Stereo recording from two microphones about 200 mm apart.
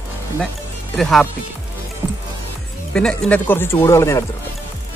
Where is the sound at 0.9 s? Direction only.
Centre (ahead or behind).